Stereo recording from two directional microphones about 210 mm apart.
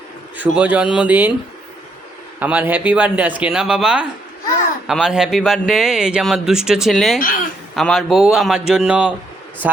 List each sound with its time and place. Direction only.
0.3 s speech: 5° right (ahead or behind)
2.4 s a man's voice: 10° right (ahead or behind)
7.2 s speech: 40° left (ahead or behind)
7.8 s a man's voice: centre (ahead or behind)